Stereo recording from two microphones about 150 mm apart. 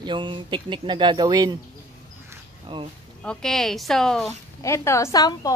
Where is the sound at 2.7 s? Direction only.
30° right (ahead or behind).